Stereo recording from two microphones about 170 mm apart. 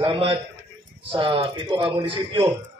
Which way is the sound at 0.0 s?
30° right (ahead or behind).